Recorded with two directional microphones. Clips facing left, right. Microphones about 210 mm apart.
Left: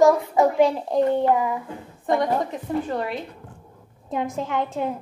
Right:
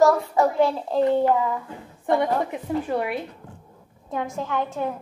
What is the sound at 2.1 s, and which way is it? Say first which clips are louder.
A woman's voice: even; 10° right (ahead or behind).